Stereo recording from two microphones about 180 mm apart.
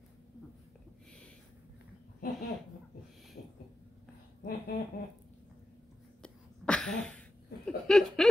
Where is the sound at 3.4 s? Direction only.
55° left (ahead or behind).